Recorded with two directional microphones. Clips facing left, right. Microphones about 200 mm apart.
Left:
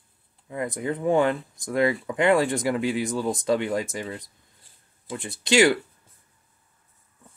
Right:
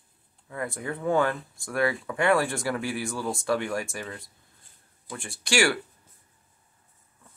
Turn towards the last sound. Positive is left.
turn(degrees=20)  # may be behind; listen again after turning